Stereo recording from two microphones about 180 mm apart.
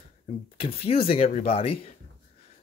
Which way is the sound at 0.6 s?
35° left (ahead or behind).